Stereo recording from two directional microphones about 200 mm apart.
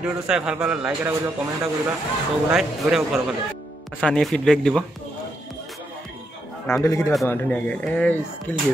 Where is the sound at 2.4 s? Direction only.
Centre (ahead or behind).